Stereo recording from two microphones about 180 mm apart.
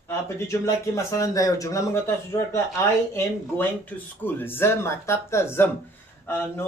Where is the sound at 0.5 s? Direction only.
15° left (ahead or behind).